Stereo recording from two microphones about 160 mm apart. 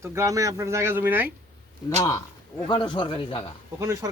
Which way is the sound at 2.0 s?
20° left (ahead or behind).